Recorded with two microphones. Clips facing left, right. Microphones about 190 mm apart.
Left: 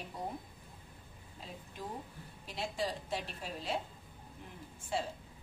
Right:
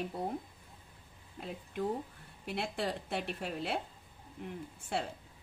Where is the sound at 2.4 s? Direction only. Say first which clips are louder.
Right 2 dB; 60° right (ahead or behind).